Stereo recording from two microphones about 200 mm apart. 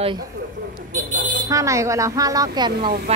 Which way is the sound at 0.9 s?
40° right (ahead or behind).